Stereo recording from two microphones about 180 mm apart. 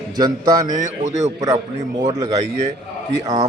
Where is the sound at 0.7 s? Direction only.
40° right (ahead or behind).